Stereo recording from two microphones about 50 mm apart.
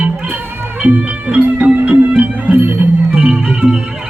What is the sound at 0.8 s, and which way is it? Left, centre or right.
Music, right.